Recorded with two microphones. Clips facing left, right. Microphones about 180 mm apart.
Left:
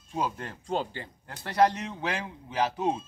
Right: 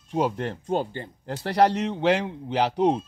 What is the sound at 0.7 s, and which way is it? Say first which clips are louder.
Speech: right 3 dB; 50° right (ahead or behind).